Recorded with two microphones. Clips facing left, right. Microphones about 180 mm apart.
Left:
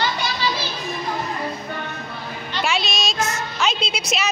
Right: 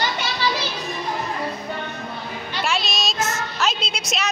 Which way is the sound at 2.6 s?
Centre (ahead or behind).